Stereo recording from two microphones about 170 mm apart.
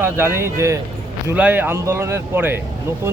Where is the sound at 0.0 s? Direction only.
15° right (ahead or behind).